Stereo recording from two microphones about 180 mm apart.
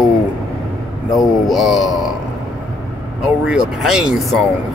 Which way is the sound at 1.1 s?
Centre (ahead or behind).